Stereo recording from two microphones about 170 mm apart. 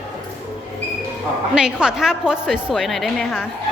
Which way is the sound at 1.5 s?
5° right (ahead or behind).